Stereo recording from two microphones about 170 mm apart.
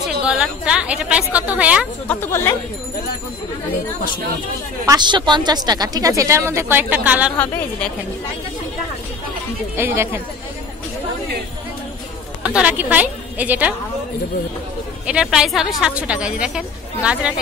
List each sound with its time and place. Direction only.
0.2 s a woman's voice: 5° right (ahead or behind)
2.0 s a woman's voice: 15° left (ahead or behind)
4.8 s speech: 25° right (ahead or behind); by 7.3 s 10° right (ahead or behind)
7.3 s a woman's voice: 10° left (ahead or behind)
9.8 s a woman's voice: 10° right (ahead or behind)
12.4 s a woman's voice: 5° right (ahead or behind)
15.0 s a woman's voice: 5° right (ahead or behind)